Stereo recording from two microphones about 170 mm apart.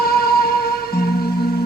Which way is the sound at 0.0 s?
65° left (ahead or behind).